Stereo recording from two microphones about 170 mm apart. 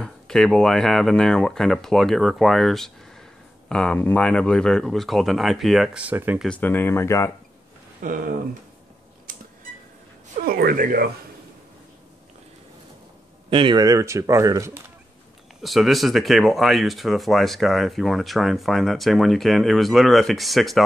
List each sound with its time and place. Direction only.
0.0 s speech: 5° left (ahead or behind)
6.6 s speech: 10° left (ahead or behind)
8.0 s speech: 55° right (ahead or behind)
9.3 s camera: 55° right (ahead or behind)
10.4 s speech: 65° right (ahead or behind)
13.5 s speech: 30° right (ahead or behind)
15.6 s speech: centre (ahead or behind)